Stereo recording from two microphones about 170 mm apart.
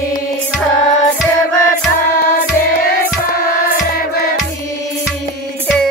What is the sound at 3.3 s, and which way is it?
Music, 60° left (ahead or behind).